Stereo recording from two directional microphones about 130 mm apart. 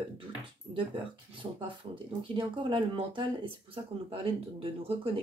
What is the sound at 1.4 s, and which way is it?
Speech, 40° right (ahead or behind).